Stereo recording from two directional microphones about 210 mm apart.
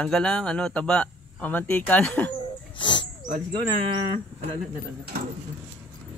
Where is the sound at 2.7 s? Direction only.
20° left (ahead or behind).